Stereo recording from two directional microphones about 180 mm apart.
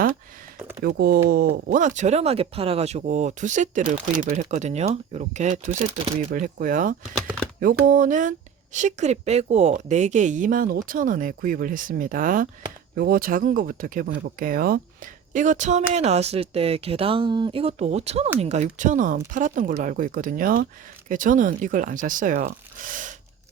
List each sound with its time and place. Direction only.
0.9 s a woman's voice: 60° right (ahead or behind)